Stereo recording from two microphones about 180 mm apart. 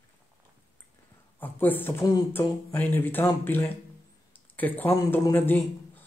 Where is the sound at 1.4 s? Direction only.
10° left (ahead or behind).